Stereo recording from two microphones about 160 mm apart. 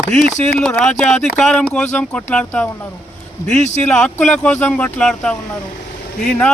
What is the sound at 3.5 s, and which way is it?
Speech, 50° left (ahead or behind).